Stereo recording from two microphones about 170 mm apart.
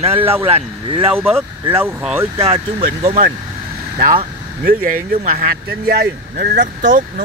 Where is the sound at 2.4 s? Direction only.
40° right (ahead or behind).